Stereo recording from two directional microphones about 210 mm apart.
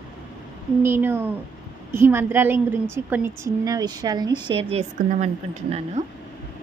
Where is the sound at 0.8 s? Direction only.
10° right (ahead or behind); by 6.1 s 35° right (ahead or behind).